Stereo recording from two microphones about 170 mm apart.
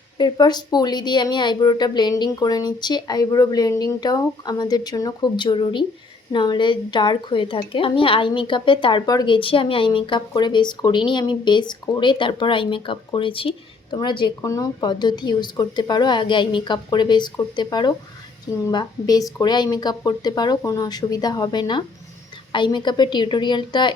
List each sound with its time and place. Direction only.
0.2 s a woman's voice: 25° left (ahead or behind)